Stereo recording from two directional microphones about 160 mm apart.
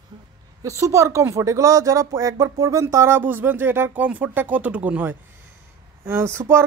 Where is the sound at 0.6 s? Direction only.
20° right (ahead or behind).